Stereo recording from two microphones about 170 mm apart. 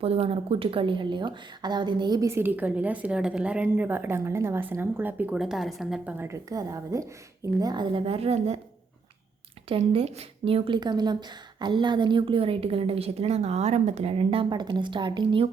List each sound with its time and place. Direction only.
0.0 s speech: 35° right (ahead or behind)
9.6 s speech: 35° right (ahead or behind)